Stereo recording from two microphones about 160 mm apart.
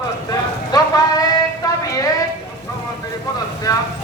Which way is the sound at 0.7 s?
25° left (ahead or behind).